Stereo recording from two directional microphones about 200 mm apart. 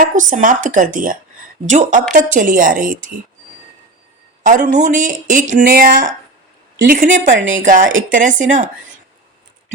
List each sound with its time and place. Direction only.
0.0 s speech: 40° right (ahead or behind)
4.4 s speech: 40° right (ahead or behind)